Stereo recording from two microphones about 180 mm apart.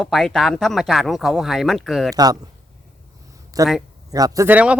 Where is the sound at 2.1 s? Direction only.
20° right (ahead or behind).